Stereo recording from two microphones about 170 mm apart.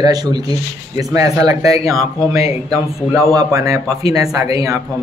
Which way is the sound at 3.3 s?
20° right (ahead or behind).